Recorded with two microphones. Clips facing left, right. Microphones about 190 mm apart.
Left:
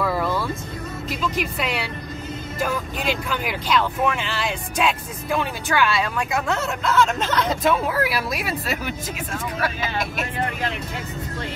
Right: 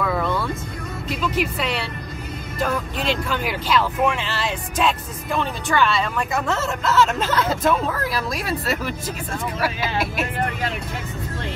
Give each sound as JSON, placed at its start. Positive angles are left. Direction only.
{"t": 0.0, "sound": "vehicle", "side_deg": 5}
{"t": 1.0, "sound": "speech", "side_deg": 0}
{"t": 7.7, "sound": "speech", "side_deg": 10}
{"t": 9.6, "sound": "vehicle", "side_deg": -10}